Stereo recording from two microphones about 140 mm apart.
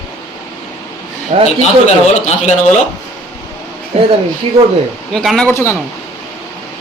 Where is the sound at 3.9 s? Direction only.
50° right (ahead or behind).